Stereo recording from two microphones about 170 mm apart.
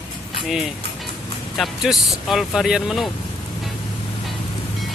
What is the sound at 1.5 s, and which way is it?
Speech, centre (ahead or behind).